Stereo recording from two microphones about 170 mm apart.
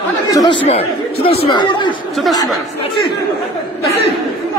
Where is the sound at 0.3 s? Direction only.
20° left (ahead or behind).